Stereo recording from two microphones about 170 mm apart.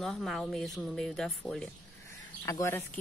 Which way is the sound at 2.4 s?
15° left (ahead or behind).